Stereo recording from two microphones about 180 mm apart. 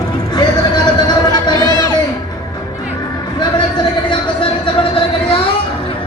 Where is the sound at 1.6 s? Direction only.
25° right (ahead or behind).